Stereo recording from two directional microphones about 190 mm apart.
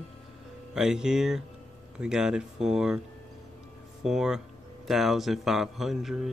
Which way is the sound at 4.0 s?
Centre (ahead or behind).